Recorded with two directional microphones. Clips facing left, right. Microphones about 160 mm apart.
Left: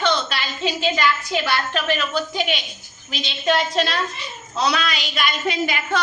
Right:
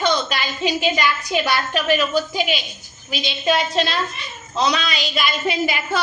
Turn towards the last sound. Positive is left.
turn(degrees=-5)  # may be behind; listen again after turning